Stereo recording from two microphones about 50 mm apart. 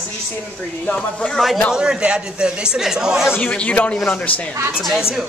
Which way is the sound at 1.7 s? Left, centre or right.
Centre.